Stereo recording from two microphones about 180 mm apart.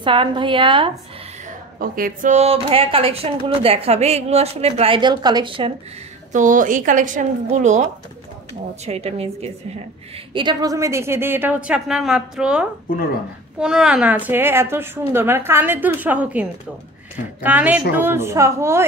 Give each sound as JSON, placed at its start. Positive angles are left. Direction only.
{"t": 0.0, "sound": "a woman's voice", "side_deg": -30}
{"t": 1.8, "sound": "speech", "side_deg": -50}
{"t": 6.3, "sound": "a woman's voice", "side_deg": -45}
{"t": 10.3, "sound": "a woman's voice", "side_deg": -25}